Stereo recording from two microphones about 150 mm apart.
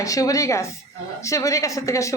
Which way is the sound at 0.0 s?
25° left (ahead or behind).